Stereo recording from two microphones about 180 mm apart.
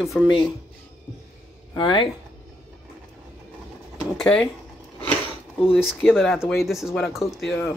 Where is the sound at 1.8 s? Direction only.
30° left (ahead or behind).